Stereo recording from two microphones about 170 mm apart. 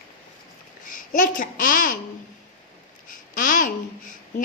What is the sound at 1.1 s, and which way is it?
Speech, 50° left (ahead or behind).